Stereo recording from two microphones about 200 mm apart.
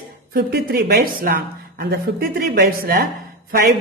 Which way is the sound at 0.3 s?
50° right (ahead or behind).